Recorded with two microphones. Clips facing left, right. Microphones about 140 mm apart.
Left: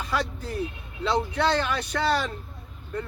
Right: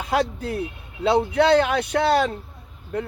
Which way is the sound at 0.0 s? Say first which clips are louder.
Right 6 dB; 65° right (ahead or behind).